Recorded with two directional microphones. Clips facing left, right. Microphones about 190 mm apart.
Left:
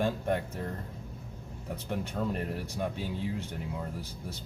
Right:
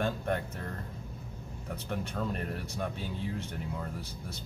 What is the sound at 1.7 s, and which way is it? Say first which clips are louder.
Speech: left 2 dB; 15° left (ahead or behind).